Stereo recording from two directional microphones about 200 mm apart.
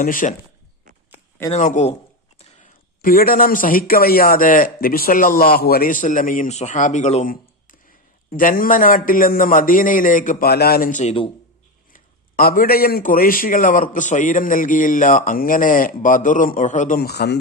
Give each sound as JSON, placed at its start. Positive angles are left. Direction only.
{"t": 0.0, "sound": "speech", "side_deg": 40}
{"t": 1.5, "sound": "a man's voice", "side_deg": 35}
{"t": 11.9, "sound": "speech", "side_deg": 45}